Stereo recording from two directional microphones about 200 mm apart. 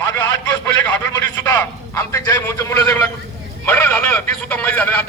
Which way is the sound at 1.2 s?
10° left (ahead or behind).